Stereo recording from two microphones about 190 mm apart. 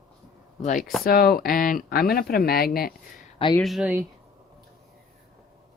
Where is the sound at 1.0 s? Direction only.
50° left (ahead or behind).